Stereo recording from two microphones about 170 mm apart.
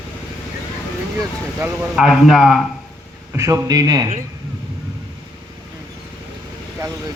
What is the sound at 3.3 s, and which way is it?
Speech, 15° right (ahead or behind).